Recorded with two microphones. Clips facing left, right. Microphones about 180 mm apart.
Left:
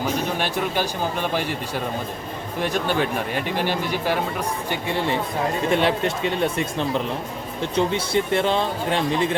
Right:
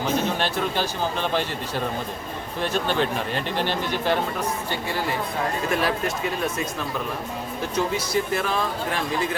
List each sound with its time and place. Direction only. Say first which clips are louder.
0.3 s speech: left 1 dB; 15° left (ahead or behind)
4.7 s speech: left 3 dB; 25° left (ahead or behind)